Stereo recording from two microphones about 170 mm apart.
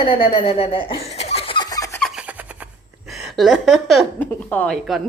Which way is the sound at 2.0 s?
Centre (ahead or behind).